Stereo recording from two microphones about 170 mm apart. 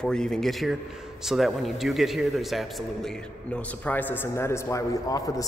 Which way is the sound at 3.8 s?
10° left (ahead or behind).